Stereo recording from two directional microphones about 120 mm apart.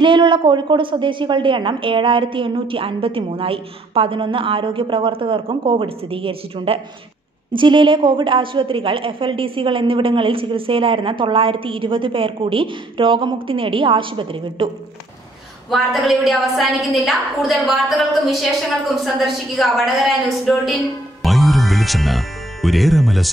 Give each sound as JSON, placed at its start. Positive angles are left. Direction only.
{"t": 0.0, "sound": "a woman's voice", "side_deg": -40}
{"t": 15.7, "sound": "a woman's voice", "side_deg": 0}